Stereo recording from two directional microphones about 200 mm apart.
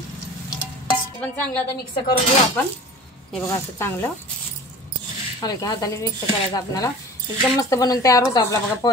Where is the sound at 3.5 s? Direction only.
10° left (ahead or behind).